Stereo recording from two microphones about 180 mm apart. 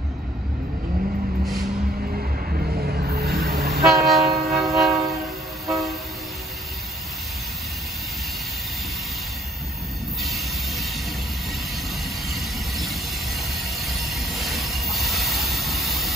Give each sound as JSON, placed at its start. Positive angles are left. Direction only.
{"t": 2.5, "sound": "vehicle", "side_deg": -60}
{"t": 3.8, "sound": "train", "side_deg": 0}
{"t": 10.2, "sound": "train", "side_deg": 0}
{"t": 12.3, "sound": "train", "side_deg": 0}